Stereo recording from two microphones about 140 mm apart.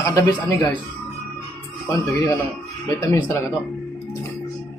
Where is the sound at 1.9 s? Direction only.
25° left (ahead or behind).